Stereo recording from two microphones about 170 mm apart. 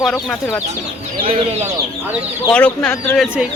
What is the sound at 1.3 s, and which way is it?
Speech, 40° right (ahead or behind).